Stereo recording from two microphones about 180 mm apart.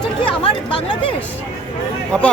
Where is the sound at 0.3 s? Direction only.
30° left (ahead or behind).